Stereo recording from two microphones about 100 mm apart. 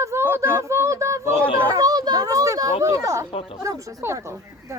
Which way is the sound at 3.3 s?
65° left (ahead or behind).